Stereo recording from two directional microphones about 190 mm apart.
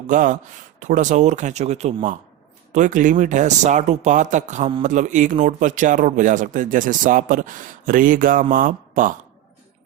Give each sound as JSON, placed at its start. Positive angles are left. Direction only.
{"t": 0.1, "sound": "speech", "side_deg": -45}